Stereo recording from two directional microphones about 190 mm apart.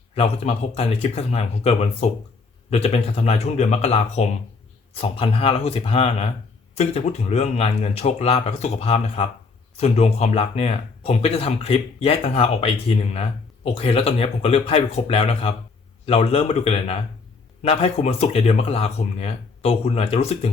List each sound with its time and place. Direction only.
0.1 s speech: 30° left (ahead or behind)